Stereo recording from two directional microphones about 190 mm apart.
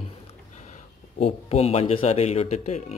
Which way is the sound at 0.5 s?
40° left (ahead or behind).